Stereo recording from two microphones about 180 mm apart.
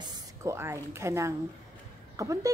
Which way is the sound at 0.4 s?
15° right (ahead or behind).